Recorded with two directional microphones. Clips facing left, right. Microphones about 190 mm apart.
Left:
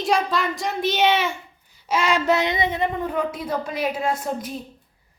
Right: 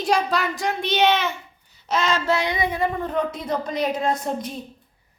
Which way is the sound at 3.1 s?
10° left (ahead or behind).